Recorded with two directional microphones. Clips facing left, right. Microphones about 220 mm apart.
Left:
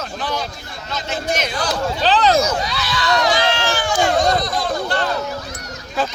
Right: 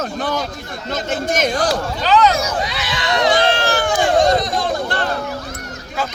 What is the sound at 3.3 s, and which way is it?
Run, 55° right (ahead or behind).